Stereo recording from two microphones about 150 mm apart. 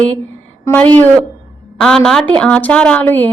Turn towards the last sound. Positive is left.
turn(degrees=10)  # may be behind; listen again after turning